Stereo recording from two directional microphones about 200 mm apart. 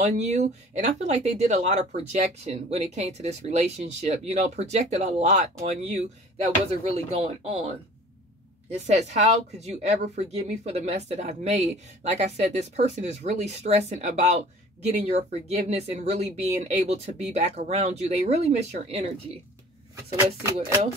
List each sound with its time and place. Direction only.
0.0 s speech: 35° right (ahead or behind)
8.8 s speech: 35° right (ahead or behind)